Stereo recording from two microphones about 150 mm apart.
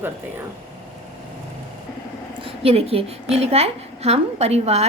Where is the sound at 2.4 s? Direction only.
40° right (ahead or behind).